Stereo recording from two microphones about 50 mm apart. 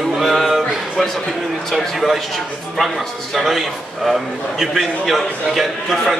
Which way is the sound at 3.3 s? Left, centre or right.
Centre.